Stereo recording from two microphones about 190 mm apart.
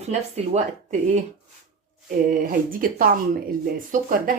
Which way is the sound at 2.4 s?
50° right (ahead or behind).